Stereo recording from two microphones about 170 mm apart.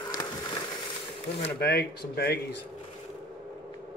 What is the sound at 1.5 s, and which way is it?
Speech, 65° left (ahead or behind).